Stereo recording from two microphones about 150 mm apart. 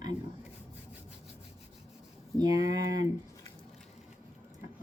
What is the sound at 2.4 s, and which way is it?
Speech, 25° right (ahead or behind).